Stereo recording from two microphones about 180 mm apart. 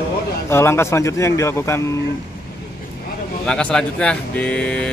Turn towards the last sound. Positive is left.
turn(degrees=5)  # may be behind; listen again after turning